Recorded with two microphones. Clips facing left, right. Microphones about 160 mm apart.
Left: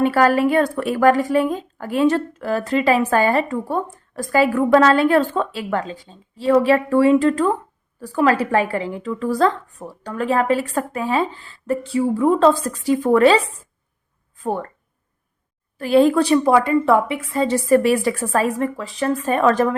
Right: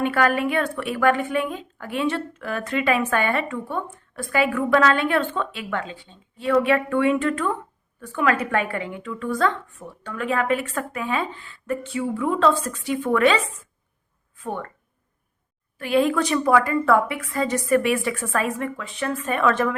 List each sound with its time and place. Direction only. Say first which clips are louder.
0.0 s a woman's voice: left 5 dB; 35° left (ahead or behind)
15.8 s a woman's voice: left 6 dB; 35° left (ahead or behind)